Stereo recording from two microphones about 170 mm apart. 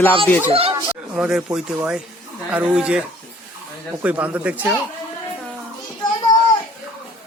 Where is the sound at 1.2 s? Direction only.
5° right (ahead or behind).